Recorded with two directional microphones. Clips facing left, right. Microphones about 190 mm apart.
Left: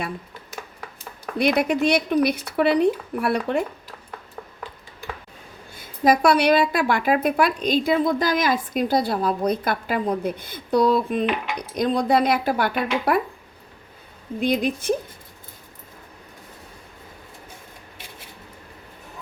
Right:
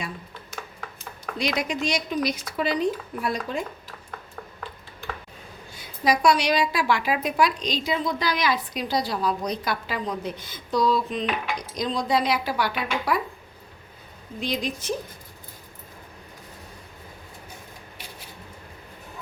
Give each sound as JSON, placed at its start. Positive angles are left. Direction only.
{"t": 1.4, "sound": "speech", "side_deg": 60}
{"t": 5.7, "sound": "a woman's voice", "side_deg": 50}
{"t": 14.4, "sound": "speech", "side_deg": 55}